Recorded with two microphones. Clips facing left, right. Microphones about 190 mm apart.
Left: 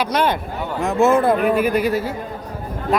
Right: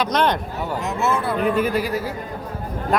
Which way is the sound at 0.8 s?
50° left (ahead or behind).